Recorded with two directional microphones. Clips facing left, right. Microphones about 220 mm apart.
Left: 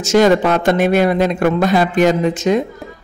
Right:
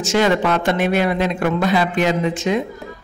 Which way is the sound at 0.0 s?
40° left (ahead or behind).